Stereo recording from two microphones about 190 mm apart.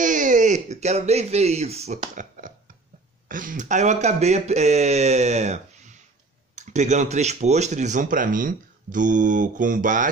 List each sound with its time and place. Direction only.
0.0 s speech: 40° right (ahead or behind)